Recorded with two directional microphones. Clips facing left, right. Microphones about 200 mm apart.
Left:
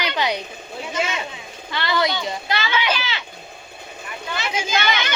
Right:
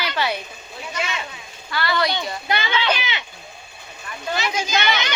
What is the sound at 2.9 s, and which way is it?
Speech, 20° right (ahead or behind).